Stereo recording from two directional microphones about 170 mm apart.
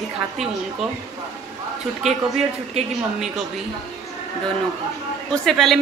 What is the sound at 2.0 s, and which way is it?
Speech, centre (ahead or behind).